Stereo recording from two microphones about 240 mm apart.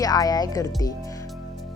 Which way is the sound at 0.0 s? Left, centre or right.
Centre.